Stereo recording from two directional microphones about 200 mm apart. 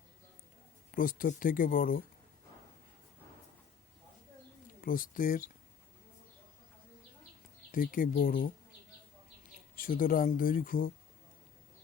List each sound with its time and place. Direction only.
0.9 s speech: 45° left (ahead or behind)
4.8 s speech: 45° left (ahead or behind)
7.7 s speech: 45° left (ahead or behind)
9.7 s speech: 45° left (ahead or behind)